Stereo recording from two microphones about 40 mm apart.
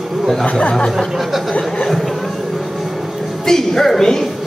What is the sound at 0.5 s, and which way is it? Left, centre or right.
Speech, left.